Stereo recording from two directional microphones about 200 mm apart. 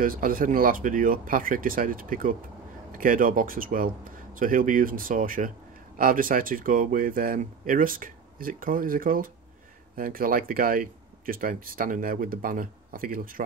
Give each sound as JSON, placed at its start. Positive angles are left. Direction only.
{"t": 0.0, "sound": "speech", "side_deg": -45}